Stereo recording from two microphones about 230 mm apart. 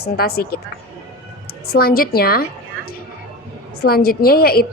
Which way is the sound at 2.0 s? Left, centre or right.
Left.